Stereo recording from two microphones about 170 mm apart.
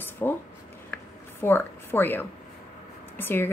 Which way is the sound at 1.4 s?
10° left (ahead or behind).